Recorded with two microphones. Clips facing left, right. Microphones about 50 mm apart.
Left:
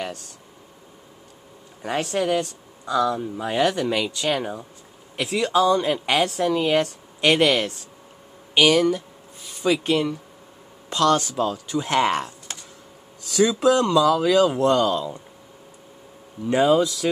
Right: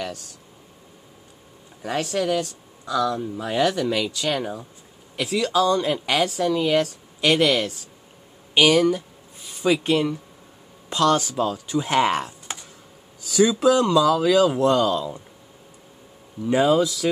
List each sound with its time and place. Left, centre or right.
2.1 s speech: centre
8.5 s speech: centre
16.4 s speech: centre